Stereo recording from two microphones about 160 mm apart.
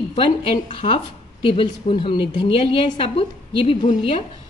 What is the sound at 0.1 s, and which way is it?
A woman's voice, 35° left (ahead or behind).